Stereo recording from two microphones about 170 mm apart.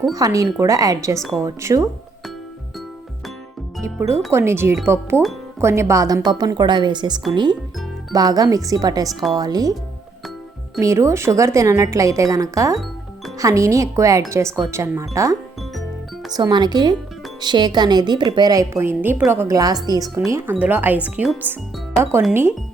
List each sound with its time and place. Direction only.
0.1 s a woman's voice: 20° right (ahead or behind)
3.8 s a woman's voice: 15° right (ahead or behind)
10.8 s a woman's voice: 20° right (ahead or behind)